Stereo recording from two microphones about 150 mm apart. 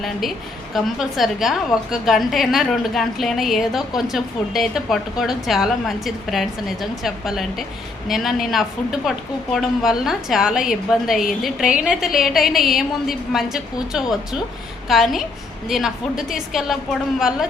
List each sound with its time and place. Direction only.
0.0 s a woman's voice: centre (ahead or behind)